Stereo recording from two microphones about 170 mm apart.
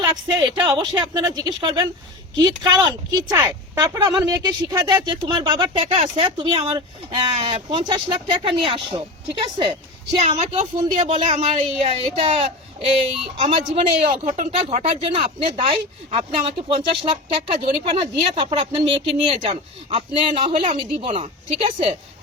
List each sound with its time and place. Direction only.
0.0 s speech: 25° right (ahead or behind)
5.8 s speech: 35° right (ahead or behind)
10.2 s speech: 35° right (ahead or behind)